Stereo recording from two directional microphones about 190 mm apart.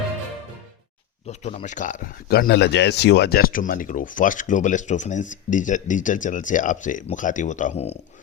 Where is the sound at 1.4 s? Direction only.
35° left (ahead or behind).